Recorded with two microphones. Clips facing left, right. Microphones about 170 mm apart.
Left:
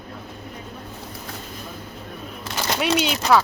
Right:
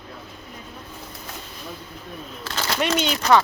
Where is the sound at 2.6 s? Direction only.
10° left (ahead or behind).